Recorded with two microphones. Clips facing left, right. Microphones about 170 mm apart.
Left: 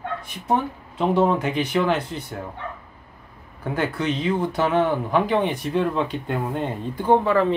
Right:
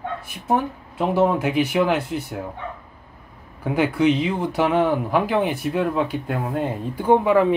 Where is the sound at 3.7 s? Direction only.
10° right (ahead or behind).